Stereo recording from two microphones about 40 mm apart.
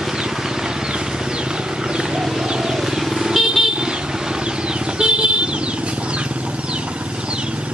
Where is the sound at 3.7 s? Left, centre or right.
Right.